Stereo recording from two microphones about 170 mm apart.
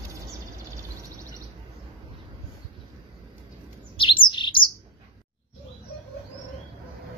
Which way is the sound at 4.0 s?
30° left (ahead or behind).